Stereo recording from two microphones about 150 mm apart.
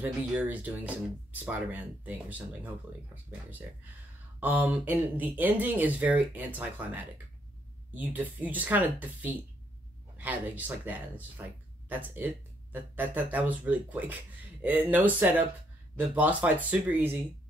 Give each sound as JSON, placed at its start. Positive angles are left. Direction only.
{"t": 0.0, "sound": "speech", "side_deg": -10}
{"t": 4.4, "sound": "speech", "side_deg": -10}